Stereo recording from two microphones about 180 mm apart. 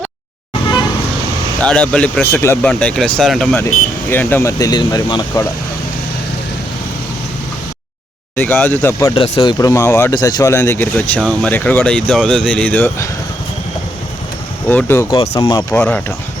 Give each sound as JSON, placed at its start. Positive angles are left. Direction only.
{"t": 1.6, "sound": "speech", "side_deg": 5}
{"t": 8.4, "sound": "speech", "side_deg": 10}
{"t": 9.1, "sound": "speech", "side_deg": 30}
{"t": 14.7, "sound": "speech", "side_deg": 10}
{"t": 15.1, "sound": "speech", "side_deg": 35}
{"t": 15.4, "sound": "speech", "side_deg": 20}
{"t": 15.8, "sound": "speech", "side_deg": 10}